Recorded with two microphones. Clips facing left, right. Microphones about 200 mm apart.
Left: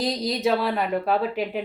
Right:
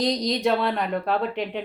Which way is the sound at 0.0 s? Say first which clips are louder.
Right 1 dB; 5° left (ahead or behind).